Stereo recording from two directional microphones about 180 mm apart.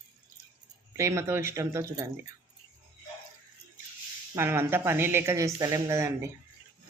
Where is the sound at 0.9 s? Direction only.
15° right (ahead or behind).